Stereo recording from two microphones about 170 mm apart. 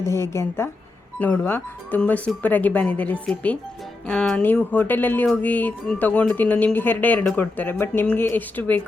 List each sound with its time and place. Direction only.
0.0 s music: 15° left (ahead or behind)